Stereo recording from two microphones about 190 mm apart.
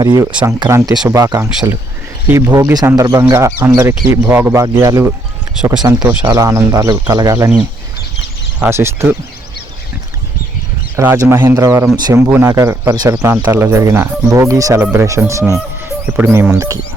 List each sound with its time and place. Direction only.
0.0 s speech: 20° right (ahead or behind)
2.5 s speech: 20° right (ahead or behind)
8.5 s speech: 10° right (ahead or behind)
10.9 s speech: 15° right (ahead or behind)